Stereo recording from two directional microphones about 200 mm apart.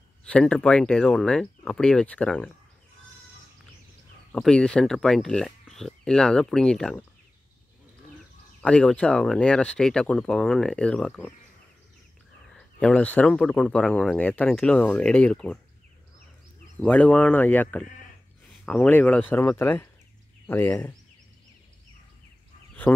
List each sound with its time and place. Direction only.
0.3 s speech: 5° left (ahead or behind)
4.3 s speech: 5° left (ahead or behind)
8.5 s speech: 5° left (ahead or behind)
12.7 s speech: 5° left (ahead or behind)
16.8 s speech: 5° left (ahead or behind)